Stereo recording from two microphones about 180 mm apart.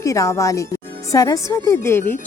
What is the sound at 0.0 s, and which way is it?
Speech, 20° left (ahead or behind).